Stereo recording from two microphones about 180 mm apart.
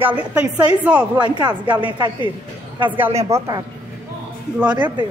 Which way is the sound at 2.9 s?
10° right (ahead or behind).